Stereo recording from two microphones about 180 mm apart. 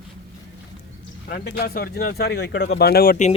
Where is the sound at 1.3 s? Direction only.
55° left (ahead or behind).